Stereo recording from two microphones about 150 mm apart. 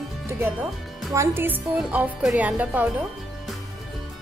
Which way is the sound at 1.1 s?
15° right (ahead or behind).